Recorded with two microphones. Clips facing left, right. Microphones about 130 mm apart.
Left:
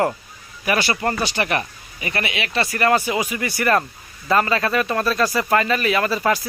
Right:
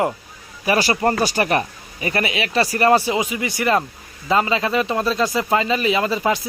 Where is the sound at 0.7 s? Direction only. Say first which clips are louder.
Right 3 dB; 35° right (ahead or behind).